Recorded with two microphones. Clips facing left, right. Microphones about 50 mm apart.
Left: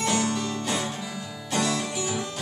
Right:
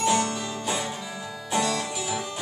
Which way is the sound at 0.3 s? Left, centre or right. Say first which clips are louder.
Left 1 dB; centre.